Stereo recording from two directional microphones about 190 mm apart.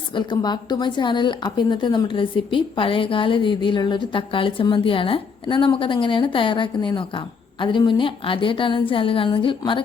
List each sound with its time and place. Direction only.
0.1 s a woman's voice: 25° left (ahead or behind)